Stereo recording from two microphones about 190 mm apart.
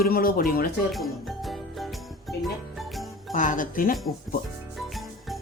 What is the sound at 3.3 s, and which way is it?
Speech, 45° left (ahead or behind).